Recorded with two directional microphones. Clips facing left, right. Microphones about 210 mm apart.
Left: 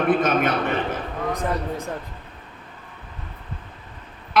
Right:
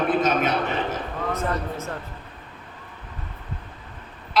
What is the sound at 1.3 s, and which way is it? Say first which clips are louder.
Speech: left 1 dB; 15° left (ahead or behind).